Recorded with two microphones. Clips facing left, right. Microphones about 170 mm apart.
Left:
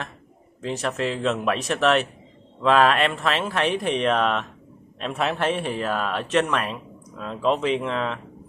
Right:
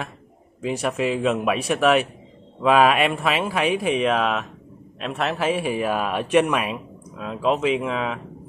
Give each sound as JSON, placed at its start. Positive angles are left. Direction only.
{"t": 0.6, "sound": "a man's voice", "side_deg": -10}